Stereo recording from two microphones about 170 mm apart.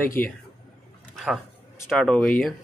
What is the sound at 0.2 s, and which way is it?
Speech, 10° left (ahead or behind).